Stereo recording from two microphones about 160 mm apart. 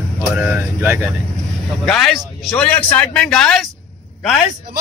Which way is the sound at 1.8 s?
Centre (ahead or behind).